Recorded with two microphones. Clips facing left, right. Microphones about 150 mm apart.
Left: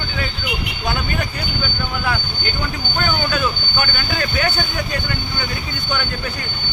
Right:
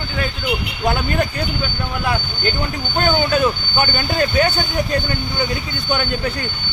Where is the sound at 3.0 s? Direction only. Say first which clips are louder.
Right 5 dB; 30° right (ahead or behind).